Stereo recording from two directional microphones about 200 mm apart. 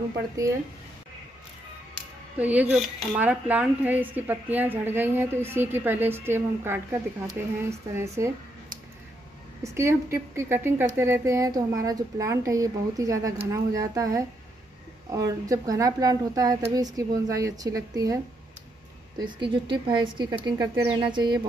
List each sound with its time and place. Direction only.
2.3 s speech: 5° right (ahead or behind)
9.6 s speech: 15° right (ahead or behind)